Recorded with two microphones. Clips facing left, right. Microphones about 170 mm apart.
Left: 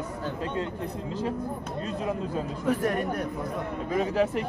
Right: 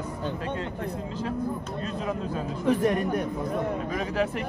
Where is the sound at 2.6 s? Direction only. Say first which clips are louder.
Right 3 dB; 20° right (ahead or behind).